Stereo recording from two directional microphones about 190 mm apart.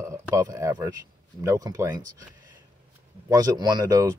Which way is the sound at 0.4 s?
15° right (ahead or behind).